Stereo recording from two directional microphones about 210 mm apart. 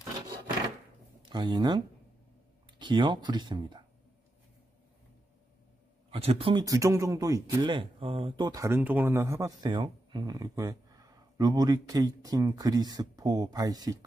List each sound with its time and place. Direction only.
1.2 s speech: 20° right (ahead or behind)
2.8 s speech: 20° right (ahead or behind)
6.0 s speech: 25° right (ahead or behind)